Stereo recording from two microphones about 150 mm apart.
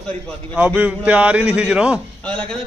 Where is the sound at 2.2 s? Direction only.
5° left (ahead or behind).